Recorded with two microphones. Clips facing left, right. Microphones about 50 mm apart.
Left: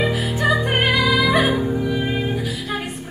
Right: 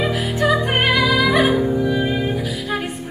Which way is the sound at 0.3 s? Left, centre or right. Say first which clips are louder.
Right 3 dB; left.